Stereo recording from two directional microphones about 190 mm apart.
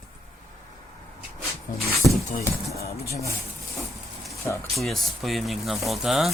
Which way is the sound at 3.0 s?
15° left (ahead or behind).